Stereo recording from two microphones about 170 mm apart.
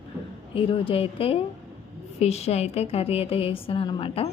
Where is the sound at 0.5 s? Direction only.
30° left (ahead or behind).